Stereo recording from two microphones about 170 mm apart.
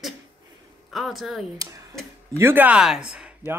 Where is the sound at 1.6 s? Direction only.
20° right (ahead or behind).